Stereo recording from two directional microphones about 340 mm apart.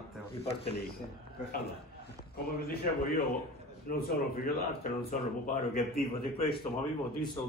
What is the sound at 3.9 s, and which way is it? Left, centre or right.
Speech, left.